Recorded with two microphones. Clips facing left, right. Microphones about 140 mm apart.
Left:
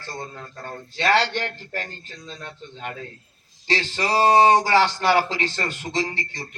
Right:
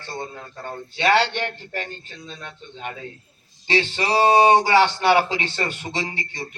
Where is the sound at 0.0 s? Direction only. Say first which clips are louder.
Right 2 dB; 20° right (ahead or behind).